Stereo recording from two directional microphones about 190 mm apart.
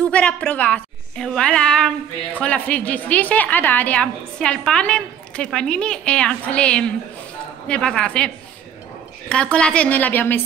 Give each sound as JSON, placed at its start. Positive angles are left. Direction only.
{"t": 0.0, "sound": "a woman's voice", "side_deg": 5}
{"t": 9.3, "sound": "a woman's voice", "side_deg": 5}